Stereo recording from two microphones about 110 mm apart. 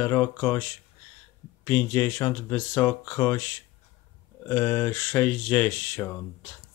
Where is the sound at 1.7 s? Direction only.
20° left (ahead or behind).